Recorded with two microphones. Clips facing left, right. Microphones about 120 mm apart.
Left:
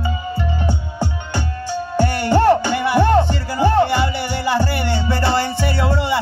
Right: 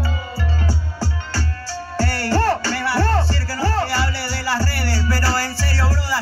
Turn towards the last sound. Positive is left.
turn(degrees=20)  # may be behind; listen again after turning